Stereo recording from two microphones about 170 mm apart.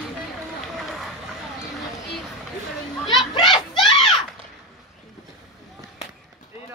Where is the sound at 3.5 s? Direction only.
30° left (ahead or behind).